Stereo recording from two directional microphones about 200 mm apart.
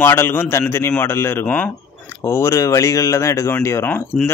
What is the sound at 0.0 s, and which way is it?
Speech, 10° left (ahead or behind).